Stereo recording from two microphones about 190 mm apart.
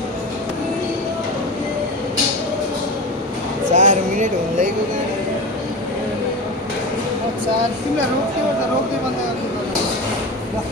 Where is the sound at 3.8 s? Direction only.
40° right (ahead or behind).